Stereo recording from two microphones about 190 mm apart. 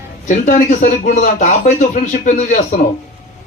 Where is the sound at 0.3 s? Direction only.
40° left (ahead or behind).